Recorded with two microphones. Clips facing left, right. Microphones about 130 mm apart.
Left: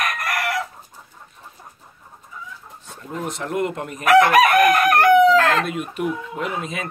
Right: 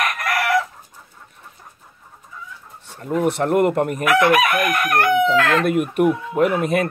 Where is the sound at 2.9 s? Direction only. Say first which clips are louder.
Right 9 dB; 65° right (ahead or behind).